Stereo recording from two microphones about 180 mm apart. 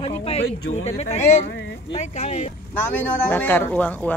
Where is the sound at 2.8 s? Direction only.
10° left (ahead or behind).